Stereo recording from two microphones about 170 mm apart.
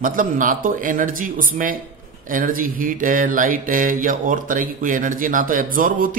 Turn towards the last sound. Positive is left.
turn(degrees=-55)  # may be behind; listen again after turning